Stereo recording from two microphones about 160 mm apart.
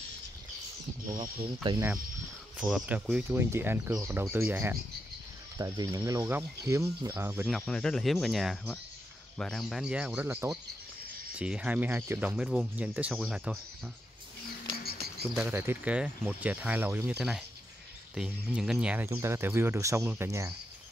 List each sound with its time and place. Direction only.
1.1 s speech: 30° right (ahead or behind)
2.6 s speech: 5° right (ahead or behind)
7.4 s speech: centre (ahead or behind)
15.3 s speech: 15° right (ahead or behind)